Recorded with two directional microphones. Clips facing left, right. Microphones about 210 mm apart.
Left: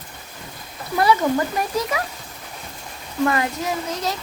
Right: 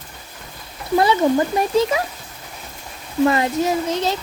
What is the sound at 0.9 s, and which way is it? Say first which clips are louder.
Speech: right 3 dB; 25° right (ahead or behind).